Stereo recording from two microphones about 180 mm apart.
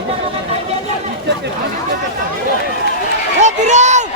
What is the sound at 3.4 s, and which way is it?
Speech, 40° right (ahead or behind).